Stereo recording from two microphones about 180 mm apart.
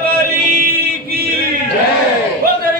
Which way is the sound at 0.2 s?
55° right (ahead or behind).